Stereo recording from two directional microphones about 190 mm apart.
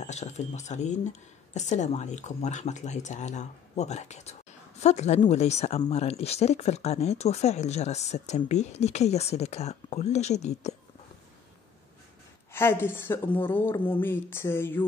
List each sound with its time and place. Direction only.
0.0 s speech: 35° left (ahead or behind)
12.5 s a woman's voice: 10° left (ahead or behind)